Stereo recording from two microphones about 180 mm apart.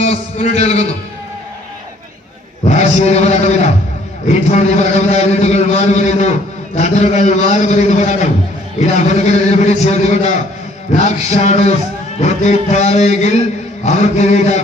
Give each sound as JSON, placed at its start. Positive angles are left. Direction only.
{"t": 0.0, "sound": "a man's voice", "side_deg": 40}
{"t": 2.6, "sound": "a man's voice", "side_deg": 40}